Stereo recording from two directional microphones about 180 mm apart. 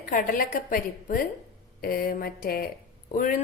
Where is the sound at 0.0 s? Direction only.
50° left (ahead or behind).